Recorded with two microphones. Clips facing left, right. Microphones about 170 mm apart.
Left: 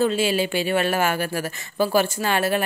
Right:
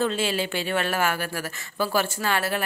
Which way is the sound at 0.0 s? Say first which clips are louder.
Left 4 dB; 10° left (ahead or behind).